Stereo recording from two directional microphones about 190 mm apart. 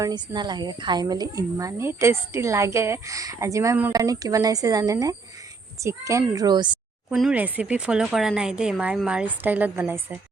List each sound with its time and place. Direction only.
0.0 s a child's voice: 20° right (ahead or behind)
7.1 s speech: 5° right (ahead or behind)